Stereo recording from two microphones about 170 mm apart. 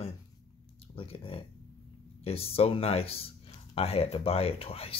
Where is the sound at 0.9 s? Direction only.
35° left (ahead or behind).